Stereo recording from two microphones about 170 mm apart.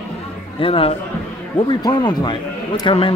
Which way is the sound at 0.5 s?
30° left (ahead or behind).